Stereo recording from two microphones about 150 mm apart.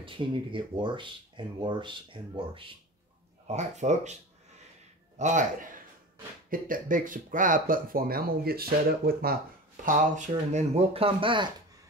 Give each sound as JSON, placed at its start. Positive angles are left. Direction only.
{"t": 0.0, "sound": "speech", "side_deg": -35}
{"t": 3.4, "sound": "speech", "side_deg": -50}
{"t": 5.2, "sound": "a man's voice", "side_deg": -55}
{"t": 9.8, "sound": "speech", "side_deg": -60}